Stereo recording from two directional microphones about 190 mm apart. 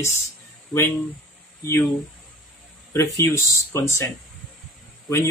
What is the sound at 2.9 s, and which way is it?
Speech, 15° left (ahead or behind).